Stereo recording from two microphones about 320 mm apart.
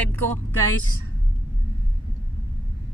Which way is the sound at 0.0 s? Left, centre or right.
Centre.